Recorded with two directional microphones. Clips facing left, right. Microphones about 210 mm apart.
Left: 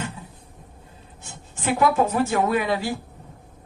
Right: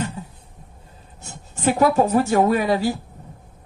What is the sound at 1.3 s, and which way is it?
Speech, 40° right (ahead or behind).